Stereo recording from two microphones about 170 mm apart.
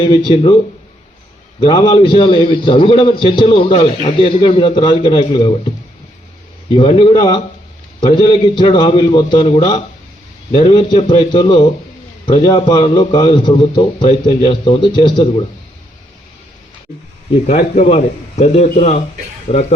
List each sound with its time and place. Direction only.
0.0 s a man's voice: 30° left (ahead or behind)
1.5 s a man's voice: 30° left (ahead or behind)
6.7 s a man's voice: 30° left (ahead or behind)
17.4 s a man's voice: 45° left (ahead or behind)
19.5 s a man's voice: 30° left (ahead or behind)